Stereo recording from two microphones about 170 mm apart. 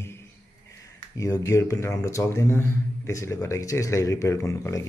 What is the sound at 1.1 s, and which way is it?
Speech, 20° left (ahead or behind).